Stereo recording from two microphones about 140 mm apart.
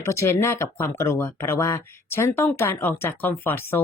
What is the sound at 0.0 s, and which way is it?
Speech, 20° left (ahead or behind).